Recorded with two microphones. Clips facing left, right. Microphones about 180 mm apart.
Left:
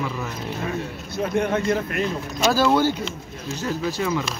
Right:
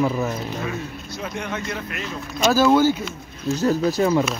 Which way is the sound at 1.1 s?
55° left (ahead or behind).